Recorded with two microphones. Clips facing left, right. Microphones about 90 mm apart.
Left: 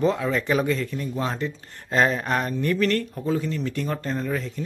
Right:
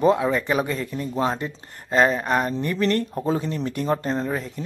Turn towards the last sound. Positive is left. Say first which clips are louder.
# right 2 dB
turn(degrees=-25)  # may be behind; listen again after turning